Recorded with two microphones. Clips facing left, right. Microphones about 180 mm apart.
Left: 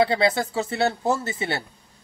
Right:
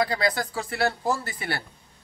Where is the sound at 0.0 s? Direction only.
25° left (ahead or behind).